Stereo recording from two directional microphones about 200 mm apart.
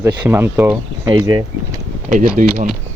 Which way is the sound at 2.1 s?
40° right (ahead or behind).